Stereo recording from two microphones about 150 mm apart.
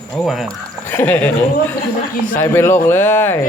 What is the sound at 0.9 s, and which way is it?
Speech, 10° left (ahead or behind).